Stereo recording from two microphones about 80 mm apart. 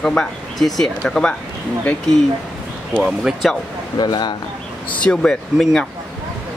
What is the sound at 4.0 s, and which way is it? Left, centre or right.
Speech, left.